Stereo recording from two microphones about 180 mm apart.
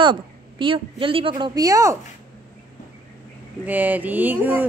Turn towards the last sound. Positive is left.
turn(degrees=-10)  # may be behind; listen again after turning